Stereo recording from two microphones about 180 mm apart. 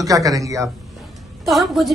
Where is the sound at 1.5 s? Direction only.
Centre (ahead or behind).